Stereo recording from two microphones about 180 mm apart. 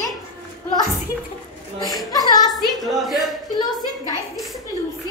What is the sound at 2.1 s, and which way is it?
Speech, 20° left (ahead or behind).